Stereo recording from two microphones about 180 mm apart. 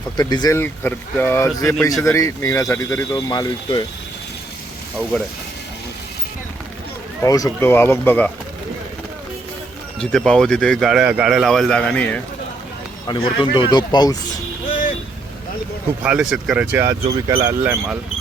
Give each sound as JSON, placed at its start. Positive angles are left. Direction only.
{"t": 0.2, "sound": "speech", "side_deg": 20}
{"t": 7.2, "sound": "speech", "side_deg": 20}
{"t": 10.0, "sound": "a man's voice", "side_deg": 5}
{"t": 13.1, "sound": "speech", "side_deg": 30}
{"t": 16.0, "sound": "speech", "side_deg": -5}